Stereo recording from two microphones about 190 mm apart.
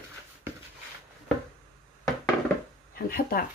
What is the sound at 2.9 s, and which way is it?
Speech, 50° left (ahead or behind).